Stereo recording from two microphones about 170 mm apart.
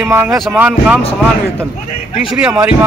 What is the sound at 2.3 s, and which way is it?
Speech, 5° right (ahead or behind).